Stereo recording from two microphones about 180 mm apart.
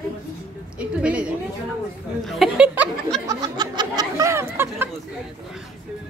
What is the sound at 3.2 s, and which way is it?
Speech, 20° right (ahead or behind).